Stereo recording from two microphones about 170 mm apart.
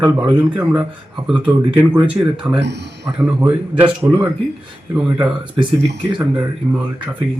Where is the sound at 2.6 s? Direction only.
90° right.